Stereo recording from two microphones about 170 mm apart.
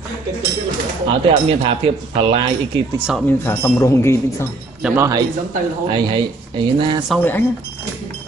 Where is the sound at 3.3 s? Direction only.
15° left (ahead or behind).